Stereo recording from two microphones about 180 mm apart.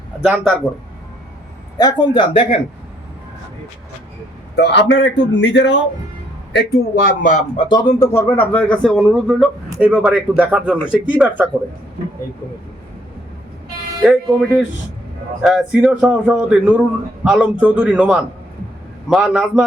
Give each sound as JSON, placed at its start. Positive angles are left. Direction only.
{"t": 0.2, "sound": "speech", "side_deg": -5}
{"t": 1.8, "sound": "speech", "side_deg": 25}
{"t": 4.5, "sound": "a man's voice", "side_deg": 70}
{"t": 6.6, "sound": "speech", "side_deg": 50}
{"t": 7.5, "sound": "speech", "side_deg": 30}
{"t": 7.9, "sound": "speech", "side_deg": 15}
{"t": 14.0, "sound": "speech", "side_deg": -5}